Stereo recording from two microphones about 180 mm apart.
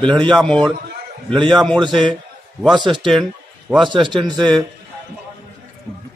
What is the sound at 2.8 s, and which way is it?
A man's voice, 25° right (ahead or behind).